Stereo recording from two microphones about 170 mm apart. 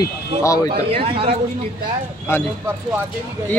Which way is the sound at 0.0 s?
20° left (ahead or behind).